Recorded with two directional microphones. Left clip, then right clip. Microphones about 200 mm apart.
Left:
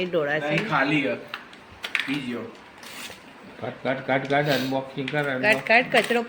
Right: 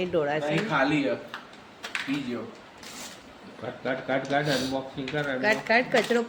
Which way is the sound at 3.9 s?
55° left (ahead or behind).